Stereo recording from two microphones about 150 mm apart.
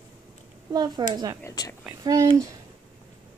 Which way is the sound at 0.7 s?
25° right (ahead or behind).